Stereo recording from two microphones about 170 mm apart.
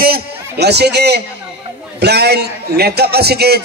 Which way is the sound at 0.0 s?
70° right (ahead or behind).